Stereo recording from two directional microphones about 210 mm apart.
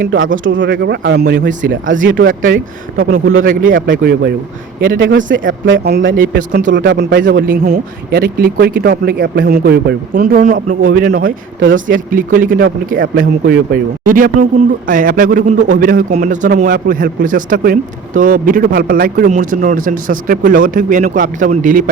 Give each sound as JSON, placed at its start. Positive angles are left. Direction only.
{"t": 0.0, "sound": "speech", "side_deg": -65}
{"t": 2.0, "sound": "a man's voice", "side_deg": -40}
{"t": 4.9, "sound": "speech", "side_deg": -60}
{"t": 6.1, "sound": "a man's voice", "side_deg": -40}
{"t": 6.7, "sound": "speech", "side_deg": -55}
{"t": 11.6, "sound": "speech", "side_deg": -65}
{"t": 11.9, "sound": "a man's voice", "side_deg": -40}